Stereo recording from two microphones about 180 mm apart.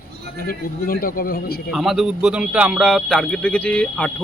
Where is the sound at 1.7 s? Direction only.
Centre (ahead or behind).